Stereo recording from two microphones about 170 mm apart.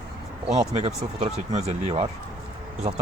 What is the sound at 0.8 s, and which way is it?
Speech, 40° right (ahead or behind).